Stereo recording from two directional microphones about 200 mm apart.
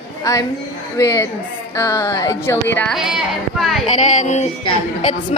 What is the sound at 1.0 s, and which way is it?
A woman's voice, 20° left (ahead or behind).